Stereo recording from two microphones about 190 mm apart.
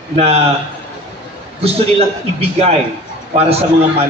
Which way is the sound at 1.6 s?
30° right (ahead or behind).